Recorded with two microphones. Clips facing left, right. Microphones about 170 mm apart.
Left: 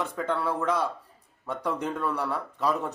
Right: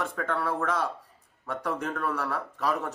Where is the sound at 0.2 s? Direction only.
15° left (ahead or behind).